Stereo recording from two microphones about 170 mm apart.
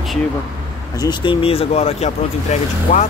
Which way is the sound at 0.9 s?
25° left (ahead or behind).